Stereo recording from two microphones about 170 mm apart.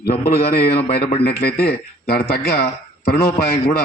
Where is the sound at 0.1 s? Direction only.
65° left (ahead or behind).